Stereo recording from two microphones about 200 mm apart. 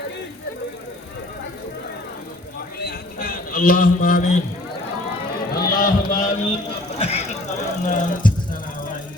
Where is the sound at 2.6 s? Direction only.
50° left (ahead or behind).